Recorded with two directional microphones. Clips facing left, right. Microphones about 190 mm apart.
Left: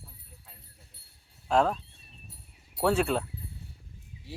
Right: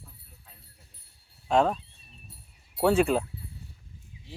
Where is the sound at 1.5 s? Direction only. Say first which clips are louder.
Right 1 dB; centre (ahead or behind).